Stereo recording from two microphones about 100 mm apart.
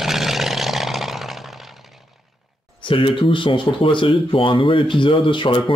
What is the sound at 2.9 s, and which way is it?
Speech, 60° left (ahead or behind).